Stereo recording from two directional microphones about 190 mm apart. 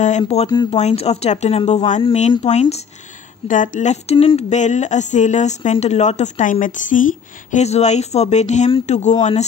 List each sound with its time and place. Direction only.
0.3 s speech: 35° left (ahead or behind)